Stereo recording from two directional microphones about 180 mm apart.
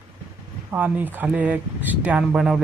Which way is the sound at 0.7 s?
10° right (ahead or behind).